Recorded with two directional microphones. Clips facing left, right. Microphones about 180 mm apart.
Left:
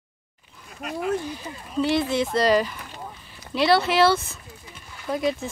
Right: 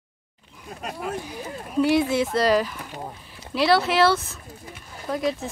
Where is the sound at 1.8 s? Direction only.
10° right (ahead or behind).